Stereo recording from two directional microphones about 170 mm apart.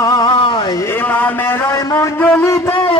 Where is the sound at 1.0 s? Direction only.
10° left (ahead or behind).